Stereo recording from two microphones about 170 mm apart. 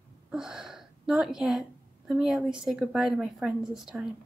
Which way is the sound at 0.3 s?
5° right (ahead or behind).